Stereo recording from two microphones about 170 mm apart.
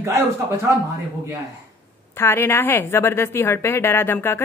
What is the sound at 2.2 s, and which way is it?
A woman's voice, 15° left (ahead or behind).